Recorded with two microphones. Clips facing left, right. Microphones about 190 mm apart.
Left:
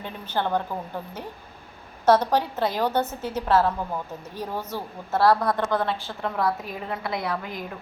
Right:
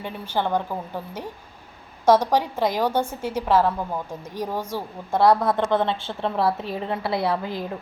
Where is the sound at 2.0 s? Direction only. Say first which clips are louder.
Right 2 dB; 10° right (ahead or behind); by 7.6 s 30° right (ahead or behind).